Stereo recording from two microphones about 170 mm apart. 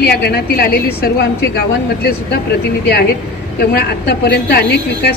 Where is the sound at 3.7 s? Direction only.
70° left (ahead or behind).